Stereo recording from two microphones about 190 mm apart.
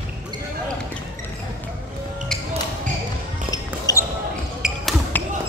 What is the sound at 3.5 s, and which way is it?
Basketball bounce, 15° left (ahead or behind).